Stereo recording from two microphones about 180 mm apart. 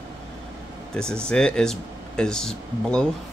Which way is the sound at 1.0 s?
5° left (ahead or behind).